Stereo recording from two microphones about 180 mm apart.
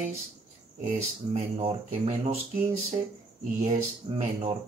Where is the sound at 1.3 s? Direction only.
35° right (ahead or behind).